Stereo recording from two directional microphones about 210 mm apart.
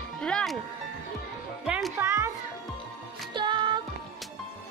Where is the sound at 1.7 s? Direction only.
Centre (ahead or behind).